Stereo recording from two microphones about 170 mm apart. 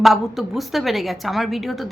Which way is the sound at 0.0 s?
Centre (ahead or behind).